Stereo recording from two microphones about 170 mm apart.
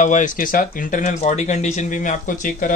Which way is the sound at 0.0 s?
45° left (ahead or behind).